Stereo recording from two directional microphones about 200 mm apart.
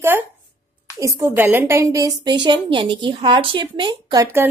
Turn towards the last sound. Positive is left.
turn(degrees=-15)  # may be behind; listen again after turning